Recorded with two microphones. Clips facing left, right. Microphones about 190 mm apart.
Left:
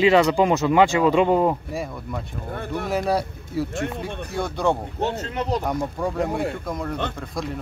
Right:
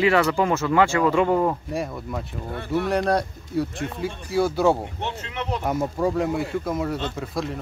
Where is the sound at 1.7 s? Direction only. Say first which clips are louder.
Right 1 dB; centre (ahead or behind).